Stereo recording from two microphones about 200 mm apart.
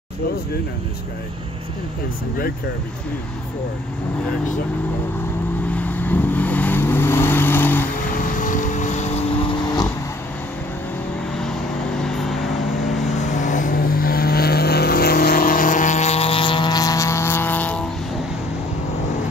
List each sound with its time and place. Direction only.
5.7 s vehicle: 10° left (ahead or behind)
7.9 s vehicle: 40° left (ahead or behind); by 9.8 s 20° left (ahead or behind)
11.3 s vehicle: 5° left (ahead or behind)
13.0 s vehicle: 35° left (ahead or behind); by 17.8 s 10° left (ahead or behind)